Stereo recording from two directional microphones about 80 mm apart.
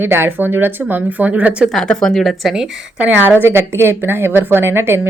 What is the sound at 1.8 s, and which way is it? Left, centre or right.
Speech, centre.